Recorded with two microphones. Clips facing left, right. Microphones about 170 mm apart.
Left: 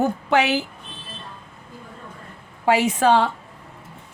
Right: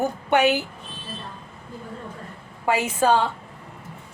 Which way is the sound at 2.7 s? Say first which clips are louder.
Left 3 dB; 85° left.